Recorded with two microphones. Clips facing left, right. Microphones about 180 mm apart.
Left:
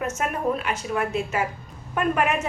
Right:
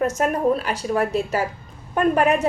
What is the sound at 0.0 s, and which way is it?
A woman's voice, 35° right (ahead or behind).